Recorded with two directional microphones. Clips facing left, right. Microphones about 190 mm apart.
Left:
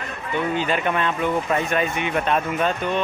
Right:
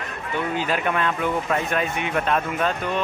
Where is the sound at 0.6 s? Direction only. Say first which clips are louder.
Right 1 dB; 5° right (ahead or behind).